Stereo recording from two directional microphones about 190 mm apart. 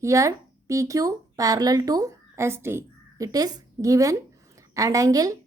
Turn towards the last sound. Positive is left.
turn(degrees=-20)  # may be behind; listen again after turning